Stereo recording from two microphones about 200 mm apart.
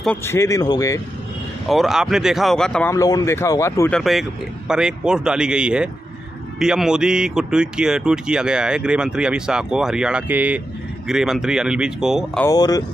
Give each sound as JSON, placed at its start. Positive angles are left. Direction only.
{"t": 0.0, "sound": "speech", "side_deg": 10}
{"t": 1.7, "sound": "speech", "side_deg": 0}
{"t": 2.9, "sound": "speech", "side_deg": 15}
{"t": 3.9, "sound": "speech", "side_deg": 0}
{"t": 12.4, "sound": "speech", "side_deg": 15}